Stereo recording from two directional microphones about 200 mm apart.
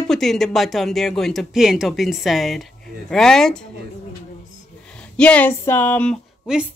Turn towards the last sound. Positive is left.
turn(degrees=0)  # may be behind; listen again after turning